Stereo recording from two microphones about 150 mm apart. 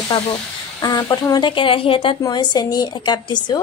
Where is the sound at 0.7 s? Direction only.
25° left (ahead or behind).